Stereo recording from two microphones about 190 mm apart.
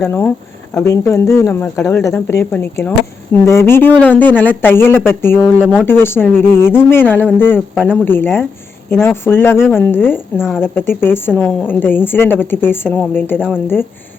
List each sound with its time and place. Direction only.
0.0 s speech: 10° left (ahead or behind)
1.7 s a woman's voice: 5° left (ahead or behind)
2.0 s speech: 15° left (ahead or behind)
7.8 s a woman's voice: 5° right (ahead or behind)
8.0 s speech: 10° left (ahead or behind)
10.3 s a woman's voice: 5° right (ahead or behind)
10.6 s speech: 10° left (ahead or behind)